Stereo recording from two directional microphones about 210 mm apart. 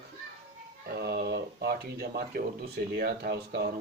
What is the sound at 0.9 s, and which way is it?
Speech, 45° right (ahead or behind).